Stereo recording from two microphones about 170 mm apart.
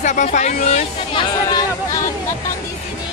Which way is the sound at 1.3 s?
25° left (ahead or behind).